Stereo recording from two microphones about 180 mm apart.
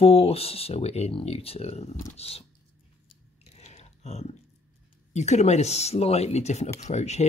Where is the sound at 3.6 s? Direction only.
40° left (ahead or behind).